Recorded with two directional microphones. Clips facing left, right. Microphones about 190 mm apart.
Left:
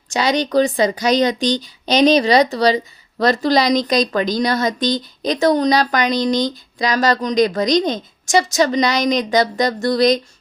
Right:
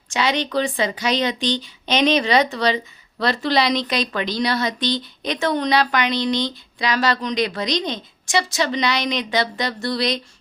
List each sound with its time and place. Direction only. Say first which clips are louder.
0.1 s speech: left 4 dB; 40° left (ahead or behind)